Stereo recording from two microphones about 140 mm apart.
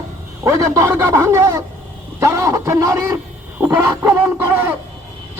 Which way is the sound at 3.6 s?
20° right (ahead or behind).